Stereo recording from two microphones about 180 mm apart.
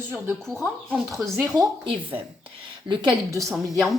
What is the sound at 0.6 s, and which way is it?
Speech, 10° right (ahead or behind).